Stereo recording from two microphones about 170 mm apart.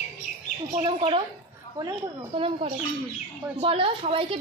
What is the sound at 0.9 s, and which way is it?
Speech, 30° right (ahead or behind).